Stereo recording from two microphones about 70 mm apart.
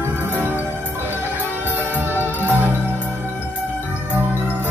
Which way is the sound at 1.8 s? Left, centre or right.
Right.